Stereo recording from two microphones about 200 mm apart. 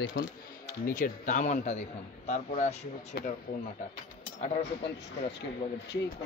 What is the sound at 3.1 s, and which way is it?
Speech, 50° left (ahead or behind).